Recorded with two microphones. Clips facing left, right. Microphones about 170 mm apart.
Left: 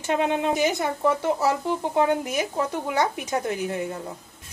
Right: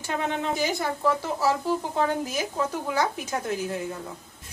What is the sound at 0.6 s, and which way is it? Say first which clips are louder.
Speech: left 3 dB; 20° left (ahead or behind).